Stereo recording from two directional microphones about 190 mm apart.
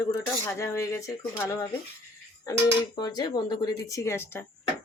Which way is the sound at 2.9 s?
20° left (ahead or behind).